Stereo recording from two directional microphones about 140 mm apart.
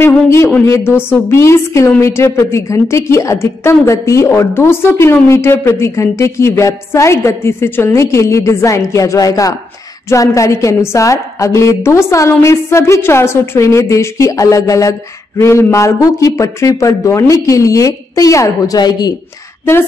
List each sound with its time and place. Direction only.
0.0 s a woman's voice: 20° left (ahead or behind)